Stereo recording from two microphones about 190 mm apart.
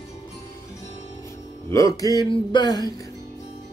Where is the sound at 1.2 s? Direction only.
15° left (ahead or behind).